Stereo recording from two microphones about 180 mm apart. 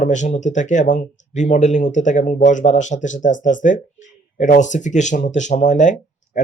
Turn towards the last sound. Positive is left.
turn(degrees=45)  # may be behind; listen again after turning